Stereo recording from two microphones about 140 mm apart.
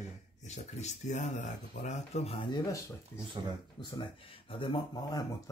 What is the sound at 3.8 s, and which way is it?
Speech, 35° left (ahead or behind).